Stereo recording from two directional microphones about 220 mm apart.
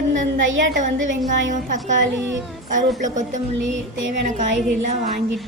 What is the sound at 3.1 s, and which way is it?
Speech, 35° right (ahead or behind).